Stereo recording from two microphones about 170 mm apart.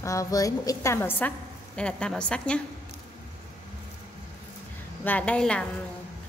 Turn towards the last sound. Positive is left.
turn(degrees=5)  # may be behind; listen again after turning